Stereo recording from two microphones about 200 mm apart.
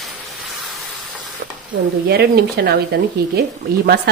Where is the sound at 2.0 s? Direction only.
50° right (ahead or behind).